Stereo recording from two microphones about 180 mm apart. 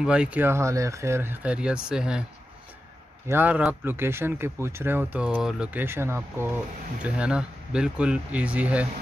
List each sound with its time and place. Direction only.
0.0 s speech: 5° right (ahead or behind)
3.3 s speech: 10° right (ahead or behind)